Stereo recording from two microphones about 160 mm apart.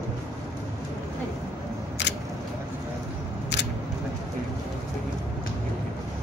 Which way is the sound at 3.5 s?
90° left.